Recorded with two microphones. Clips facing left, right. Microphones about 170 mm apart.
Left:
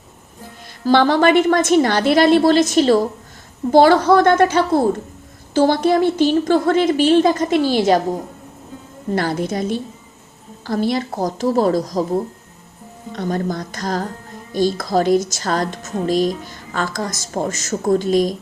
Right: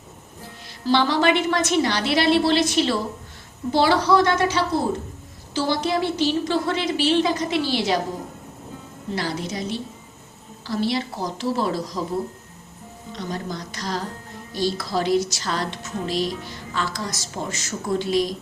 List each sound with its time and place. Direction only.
0.9 s speech: 50° left (ahead or behind)
9.1 s speech: 50° left (ahead or behind)